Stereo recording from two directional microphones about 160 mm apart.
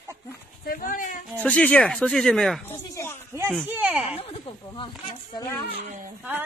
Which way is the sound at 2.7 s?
15° left (ahead or behind).